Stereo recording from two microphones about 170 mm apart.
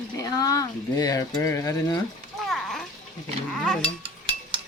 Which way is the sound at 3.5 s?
Centre (ahead or behind).